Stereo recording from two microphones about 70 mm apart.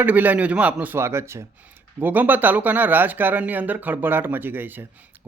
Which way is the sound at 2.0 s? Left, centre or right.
Right.